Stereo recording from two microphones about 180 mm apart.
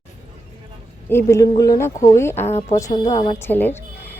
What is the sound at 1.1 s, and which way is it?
A woman's voice, 15° left (ahead or behind).